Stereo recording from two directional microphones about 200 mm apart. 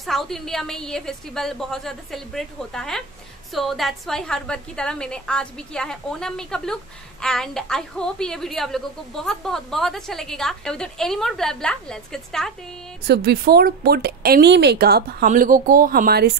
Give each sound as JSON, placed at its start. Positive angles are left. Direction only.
{"t": 0.0, "sound": "a woman's voice", "side_deg": 0}
{"t": 13.0, "sound": "speech", "side_deg": -50}